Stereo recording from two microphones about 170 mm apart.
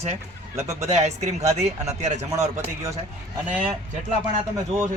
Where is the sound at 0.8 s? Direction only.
40° right (ahead or behind).